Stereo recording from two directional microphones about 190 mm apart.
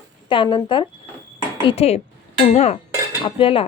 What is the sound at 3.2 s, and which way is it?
Speech, 30° left (ahead or behind).